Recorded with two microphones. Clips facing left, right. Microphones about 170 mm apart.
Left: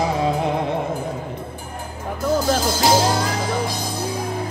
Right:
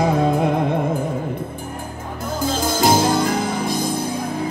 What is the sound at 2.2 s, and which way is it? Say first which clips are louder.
Music: left 3 dB; 50° right (ahead or behind).